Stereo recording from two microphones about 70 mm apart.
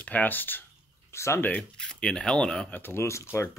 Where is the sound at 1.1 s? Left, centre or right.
Left.